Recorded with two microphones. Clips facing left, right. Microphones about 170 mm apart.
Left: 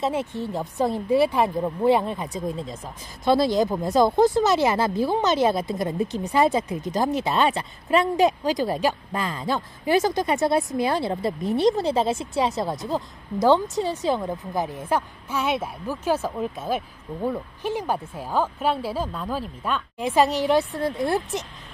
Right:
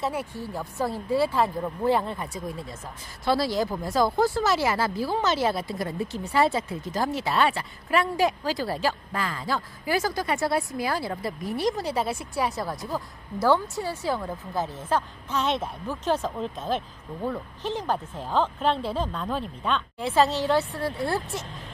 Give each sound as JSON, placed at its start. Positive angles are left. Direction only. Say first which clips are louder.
{"t": 0.0, "sound": "speech", "louder": "left 4 dB", "side_deg": 20}
{"t": 20.0, "sound": "a woman's voice", "louder": "left 3 dB", "side_deg": 15}